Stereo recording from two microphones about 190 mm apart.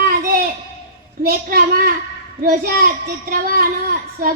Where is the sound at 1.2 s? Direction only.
50° right (ahead or behind).